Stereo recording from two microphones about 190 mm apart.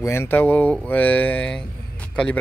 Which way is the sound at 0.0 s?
15° left (ahead or behind).